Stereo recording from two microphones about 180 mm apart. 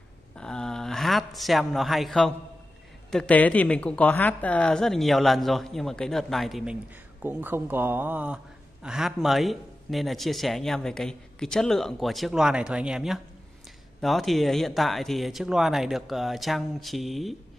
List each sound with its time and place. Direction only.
0.4 s speech: 5° left (ahead or behind)